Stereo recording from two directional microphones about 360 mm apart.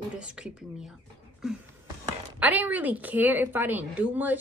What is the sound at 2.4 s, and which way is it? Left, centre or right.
A woman's voice, centre.